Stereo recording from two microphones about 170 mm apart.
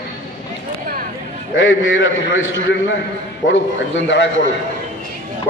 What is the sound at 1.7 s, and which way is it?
Speech, 90° left.